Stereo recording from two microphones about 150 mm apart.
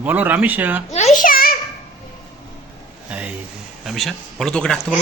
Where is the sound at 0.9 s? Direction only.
55° left (ahead or behind); by 1.5 s 75° left (ahead or behind).